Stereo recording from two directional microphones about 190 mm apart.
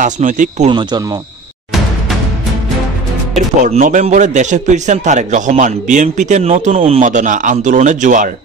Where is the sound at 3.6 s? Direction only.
40° right (ahead or behind).